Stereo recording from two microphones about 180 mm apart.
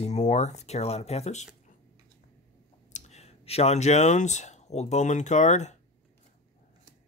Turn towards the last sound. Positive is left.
turn(degrees=40)  # may be behind; listen again after turning